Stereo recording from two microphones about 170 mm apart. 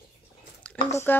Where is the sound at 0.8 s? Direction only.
15° left (ahead or behind).